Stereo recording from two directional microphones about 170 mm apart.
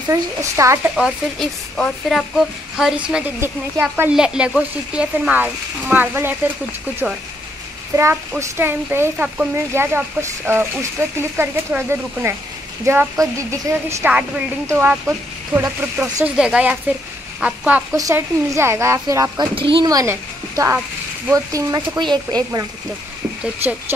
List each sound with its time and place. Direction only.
0.1 s speech: 15° right (ahead or behind)
0.9 s speech: centre (ahead or behind)
7.9 s a child's voice: 15° right (ahead or behind)
17.9 s speech: 20° right (ahead or behind)
19.5 s speech: 30° right (ahead or behind)